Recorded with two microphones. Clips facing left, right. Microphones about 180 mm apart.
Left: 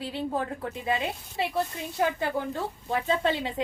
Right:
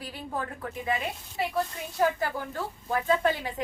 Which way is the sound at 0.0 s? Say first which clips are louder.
Left 5 dB; 25° left (ahead or behind).